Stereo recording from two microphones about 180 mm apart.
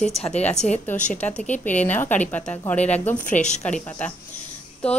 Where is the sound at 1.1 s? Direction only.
5° left (ahead or behind).